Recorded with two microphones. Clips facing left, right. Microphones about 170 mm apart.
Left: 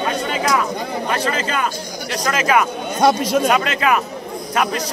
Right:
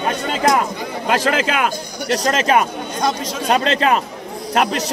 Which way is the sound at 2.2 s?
30° right (ahead or behind).